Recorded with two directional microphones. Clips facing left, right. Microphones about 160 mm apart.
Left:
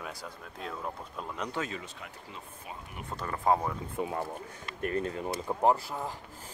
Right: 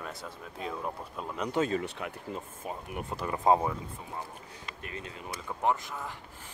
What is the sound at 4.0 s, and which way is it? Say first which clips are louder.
Speech: left 12 dB; 70° left (ahead or behind).